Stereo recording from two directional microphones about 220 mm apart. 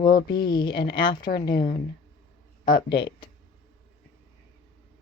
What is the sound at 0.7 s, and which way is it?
Speech, 50° left (ahead or behind).